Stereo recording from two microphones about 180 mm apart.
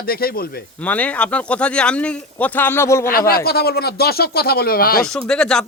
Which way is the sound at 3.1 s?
55° left (ahead or behind).